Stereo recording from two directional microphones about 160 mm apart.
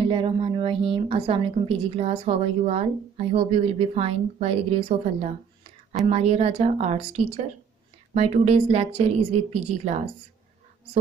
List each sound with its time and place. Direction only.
0.0 s a woman's voice: 35° right (ahead or behind)
6.0 s a woman's voice: 40° right (ahead or behind)